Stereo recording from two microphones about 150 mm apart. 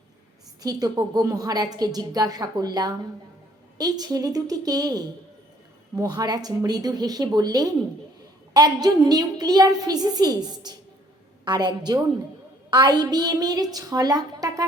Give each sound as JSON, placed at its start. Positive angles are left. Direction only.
{"t": 0.6, "sound": "a woman's voice", "side_deg": -25}